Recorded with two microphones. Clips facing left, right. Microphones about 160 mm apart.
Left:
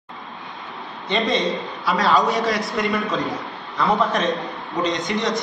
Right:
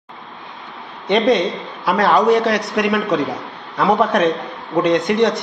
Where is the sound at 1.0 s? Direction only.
60° right (ahead or behind).